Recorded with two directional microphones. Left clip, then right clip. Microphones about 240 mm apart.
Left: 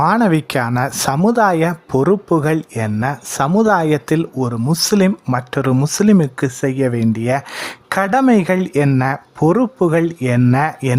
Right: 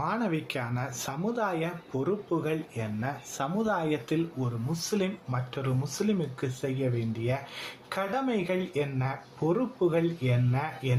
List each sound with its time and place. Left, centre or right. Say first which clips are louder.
0.0 s speech: left 16 dB; left